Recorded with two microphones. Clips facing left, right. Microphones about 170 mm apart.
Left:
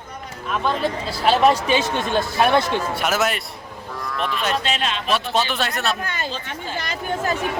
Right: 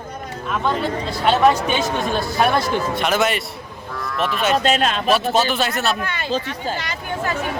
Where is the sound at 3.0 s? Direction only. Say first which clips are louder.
Right 2 dB; 5° left (ahead or behind).